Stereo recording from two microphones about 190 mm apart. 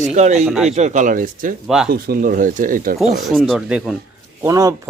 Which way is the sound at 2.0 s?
50° right (ahead or behind).